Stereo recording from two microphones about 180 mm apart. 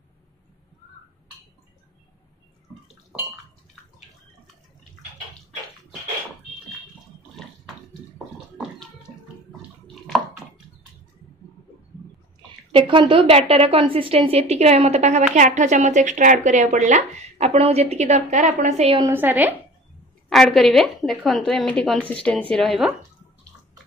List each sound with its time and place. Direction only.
12.7 s a woman's voice: 25° right (ahead or behind)
18.9 s a woman's voice: 15° right (ahead or behind)
20.2 s a woman's voice: centre (ahead or behind)